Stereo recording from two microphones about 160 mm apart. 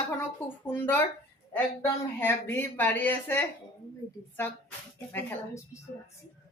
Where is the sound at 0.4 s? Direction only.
15° left (ahead or behind).